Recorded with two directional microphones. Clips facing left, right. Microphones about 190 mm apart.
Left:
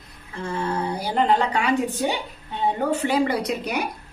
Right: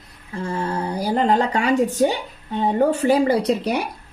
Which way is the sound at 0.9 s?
40° right (ahead or behind).